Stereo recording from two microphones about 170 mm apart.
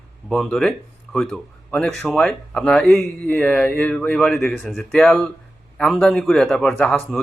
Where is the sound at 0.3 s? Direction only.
Centre (ahead or behind).